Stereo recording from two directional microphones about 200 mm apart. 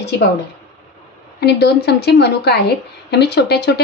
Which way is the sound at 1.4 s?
55° left (ahead or behind).